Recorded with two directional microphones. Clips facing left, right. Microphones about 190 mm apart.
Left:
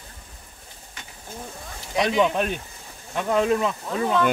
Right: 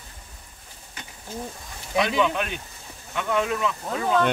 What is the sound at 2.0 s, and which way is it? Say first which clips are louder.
Speech: left 2 dB; 35° left (ahead or behind).